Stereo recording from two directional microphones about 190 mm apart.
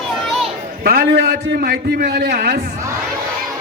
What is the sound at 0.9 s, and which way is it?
A man's voice, 55° right (ahead or behind).